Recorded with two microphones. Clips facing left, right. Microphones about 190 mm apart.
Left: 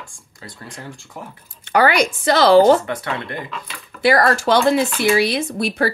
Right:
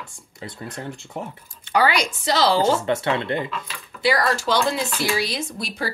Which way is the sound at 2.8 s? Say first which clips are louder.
Right 4 dB; 25° right (ahead or behind).